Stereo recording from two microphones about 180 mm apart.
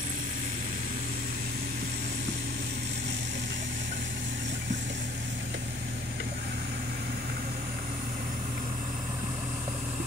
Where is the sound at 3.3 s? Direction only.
70° right (ahead or behind).